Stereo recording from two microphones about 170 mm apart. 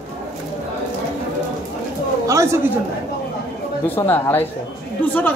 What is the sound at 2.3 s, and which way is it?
Speech, 15° right (ahead or behind).